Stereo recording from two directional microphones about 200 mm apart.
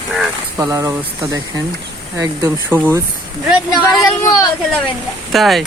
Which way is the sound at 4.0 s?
15° left (ahead or behind).